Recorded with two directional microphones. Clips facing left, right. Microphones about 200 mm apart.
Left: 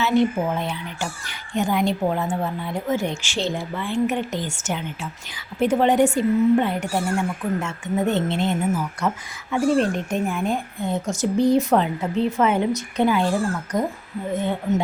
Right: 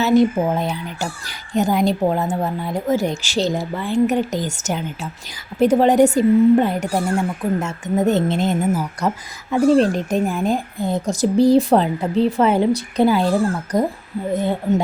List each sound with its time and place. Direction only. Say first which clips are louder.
0.0 s speech: right 5 dB; 40° right (ahead or behind)